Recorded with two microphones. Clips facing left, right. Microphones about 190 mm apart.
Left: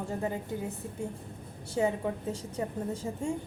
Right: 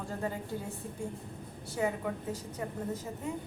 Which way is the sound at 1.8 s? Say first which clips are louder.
Left 4 dB; 25° left (ahead or behind).